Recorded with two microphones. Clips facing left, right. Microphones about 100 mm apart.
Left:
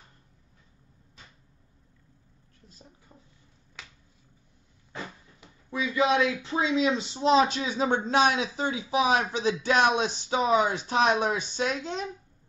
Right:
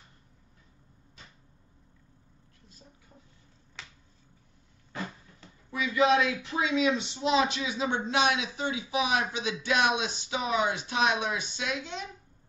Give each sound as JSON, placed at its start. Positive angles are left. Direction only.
{"t": 5.7, "sound": "speech", "side_deg": 25}